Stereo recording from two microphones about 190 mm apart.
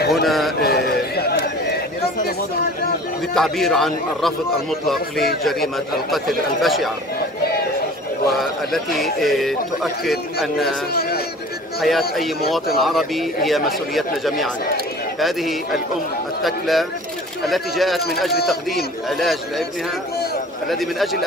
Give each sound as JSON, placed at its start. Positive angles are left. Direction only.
{"t": 0.1, "sound": "speech", "side_deg": 0}
{"t": 0.6, "sound": "a sound", "side_deg": 55}
{"t": 3.3, "sound": "a man's voice", "side_deg": 0}
{"t": 8.4, "sound": "a man's voice", "side_deg": 0}
{"t": 10.9, "sound": "a man's voice", "side_deg": 55}
{"t": 11.8, "sound": "a man's voice", "side_deg": 0}
{"t": 19.0, "sound": "a man's voice", "side_deg": 0}
{"t": 20.6, "sound": "a man's voice", "side_deg": 0}